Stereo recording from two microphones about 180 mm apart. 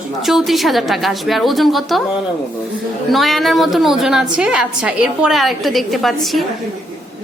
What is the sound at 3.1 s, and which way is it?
A woman's voice, centre (ahead or behind).